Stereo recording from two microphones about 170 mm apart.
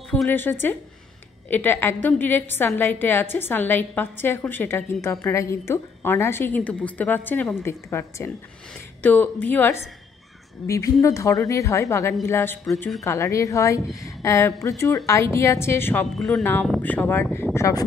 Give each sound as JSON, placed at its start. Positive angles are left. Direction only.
{"t": 0.1, "sound": "a woman's voice", "side_deg": 10}
{"t": 16.2, "sound": "a woman's voice", "side_deg": 0}